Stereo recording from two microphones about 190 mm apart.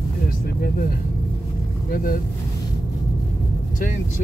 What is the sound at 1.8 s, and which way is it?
Speech, 50° left (ahead or behind).